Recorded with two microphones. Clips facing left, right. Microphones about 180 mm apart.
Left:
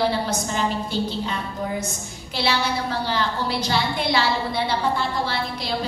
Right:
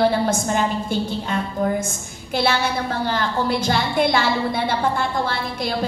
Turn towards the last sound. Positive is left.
turn(degrees=-50)  # may be behind; listen again after turning